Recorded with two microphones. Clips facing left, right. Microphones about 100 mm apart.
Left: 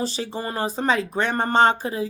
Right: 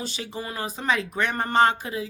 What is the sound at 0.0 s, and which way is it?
Speech, 35° left (ahead or behind).